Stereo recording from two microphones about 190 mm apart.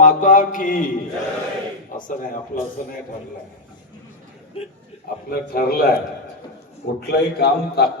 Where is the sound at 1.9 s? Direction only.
45° left (ahead or behind).